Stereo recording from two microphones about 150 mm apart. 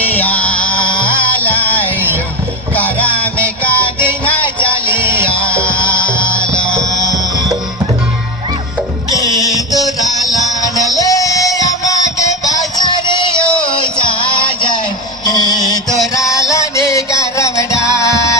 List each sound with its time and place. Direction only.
0.1 s music: 10° left (ahead or behind)
4.4 s music: 35° left (ahead or behind)
5.0 s music: 15° right (ahead or behind)
5.7 s music: 35° left (ahead or behind)
9.1 s music: 25° left (ahead or behind)
9.8 s music: centre (ahead or behind)
10.3 s music: 25° left (ahead or behind)